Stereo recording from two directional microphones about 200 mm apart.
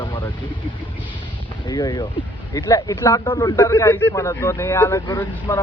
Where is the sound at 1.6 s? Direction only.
20° left (ahead or behind).